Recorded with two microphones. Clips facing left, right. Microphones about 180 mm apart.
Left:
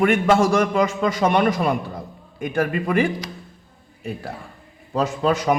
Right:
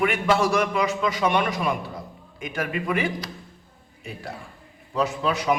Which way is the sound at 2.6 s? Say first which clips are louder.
Left 4 dB; 45° left (ahead or behind).